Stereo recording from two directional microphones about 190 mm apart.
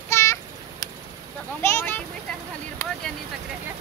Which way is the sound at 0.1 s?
15° left (ahead or behind).